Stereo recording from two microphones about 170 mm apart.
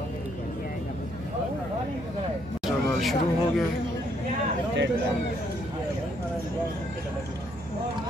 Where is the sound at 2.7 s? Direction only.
Centre (ahead or behind).